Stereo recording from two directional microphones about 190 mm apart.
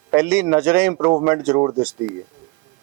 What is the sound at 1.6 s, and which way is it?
Speech, 25° right (ahead or behind).